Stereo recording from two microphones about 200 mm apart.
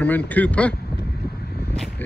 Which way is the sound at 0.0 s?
10° left (ahead or behind).